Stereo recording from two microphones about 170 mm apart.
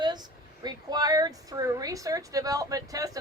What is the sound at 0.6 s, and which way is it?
A woman's voice, 25° right (ahead or behind).